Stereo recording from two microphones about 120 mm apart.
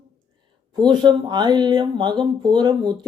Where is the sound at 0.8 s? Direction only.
35° right (ahead or behind).